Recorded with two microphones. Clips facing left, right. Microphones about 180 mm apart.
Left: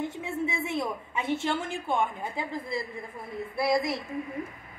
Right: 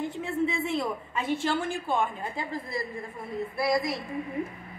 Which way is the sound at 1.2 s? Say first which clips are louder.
Right 1 dB; 20° left (ahead or behind).